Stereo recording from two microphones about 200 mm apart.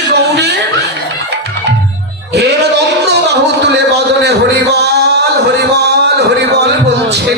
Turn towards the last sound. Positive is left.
turn(degrees=-55)  # may be behind; listen again after turning